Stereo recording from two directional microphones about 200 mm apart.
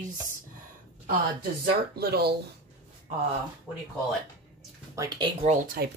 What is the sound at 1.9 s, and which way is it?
Speech, 50° right (ahead or behind).